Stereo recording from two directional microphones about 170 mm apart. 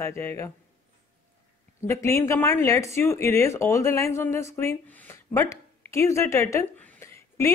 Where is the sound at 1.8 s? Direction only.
15° left (ahead or behind).